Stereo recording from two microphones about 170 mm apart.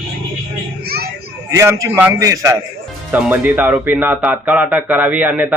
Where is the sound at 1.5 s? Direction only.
15° right (ahead or behind).